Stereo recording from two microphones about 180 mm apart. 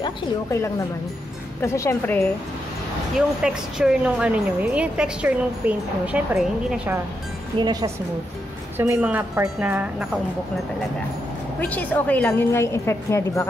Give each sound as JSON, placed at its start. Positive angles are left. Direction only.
{"t": 0.0, "sound": "a woman's voice", "side_deg": 15}
{"t": 3.2, "sound": "a woman's voice", "side_deg": -5}
{"t": 7.5, "sound": "speech", "side_deg": -25}
{"t": 8.7, "sound": "speech", "side_deg": -10}
{"t": 11.6, "sound": "a woman's voice", "side_deg": 10}